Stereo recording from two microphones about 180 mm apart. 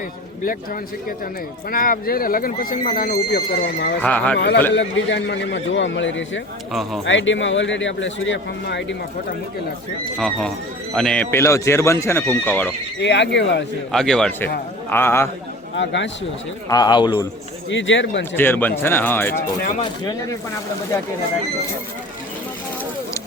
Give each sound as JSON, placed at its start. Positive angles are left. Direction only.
{"t": 1.7, "sound": "speech", "side_deg": 55}
{"t": 4.0, "sound": "speech", "side_deg": 10}
{"t": 4.4, "sound": "speech", "side_deg": 65}
{"t": 4.7, "sound": "speech", "side_deg": 80}
{"t": 10.2, "sound": "speech", "side_deg": 5}
{"t": 13.0, "sound": "speech", "side_deg": 75}
{"t": 13.9, "sound": "a man's voice", "side_deg": 0}
{"t": 15.7, "sound": "speech", "side_deg": 90}
{"t": 16.6, "sound": "speech", "side_deg": 25}
{"t": 17.7, "sound": "speech", "side_deg": 90}
{"t": 18.3, "sound": "speech", "side_deg": 10}